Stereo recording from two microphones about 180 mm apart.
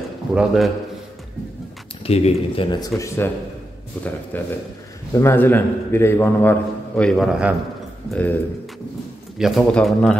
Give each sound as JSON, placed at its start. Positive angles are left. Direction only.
{"t": 0.3, "sound": "a man's voice", "side_deg": -5}
{"t": 2.0, "sound": "speech", "side_deg": 35}
{"t": 3.2, "sound": "a man's voice", "side_deg": 10}
{"t": 8.1, "sound": "a man's voice", "side_deg": 10}
{"t": 9.4, "sound": "a man's voice", "side_deg": 0}